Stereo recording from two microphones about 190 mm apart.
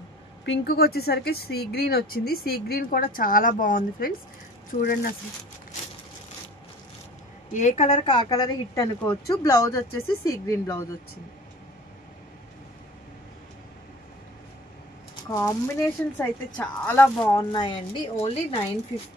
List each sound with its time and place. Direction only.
0.5 s speech: 55° left (ahead or behind); by 4.9 s 40° left (ahead or behind)
7.5 s a woman's voice: 35° left (ahead or behind); by 10.9 s 15° left (ahead or behind)
15.1 s speech: 15° left (ahead or behind)
17.3 s a woman's voice: 25° left (ahead or behind)